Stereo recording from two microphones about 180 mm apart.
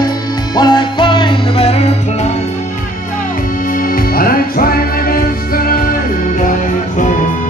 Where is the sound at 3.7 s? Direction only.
50° left (ahead or behind).